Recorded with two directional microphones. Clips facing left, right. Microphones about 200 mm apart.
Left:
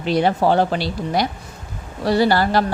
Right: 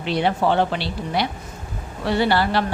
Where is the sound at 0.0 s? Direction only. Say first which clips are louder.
Left 3 dB; 40° left (ahead or behind).